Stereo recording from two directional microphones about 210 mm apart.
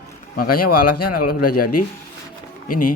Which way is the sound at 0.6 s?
90° left.